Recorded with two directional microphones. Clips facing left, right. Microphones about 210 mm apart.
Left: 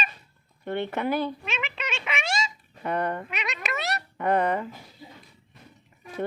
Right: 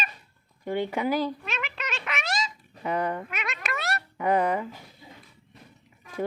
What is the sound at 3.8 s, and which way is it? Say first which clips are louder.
Dog: right 1 dB; centre (ahead or behind).